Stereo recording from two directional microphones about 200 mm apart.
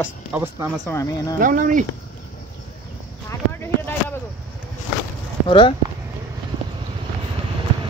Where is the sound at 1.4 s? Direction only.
40° right (ahead or behind).